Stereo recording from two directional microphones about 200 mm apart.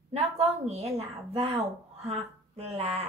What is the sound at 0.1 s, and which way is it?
A woman's voice, 30° right (ahead or behind).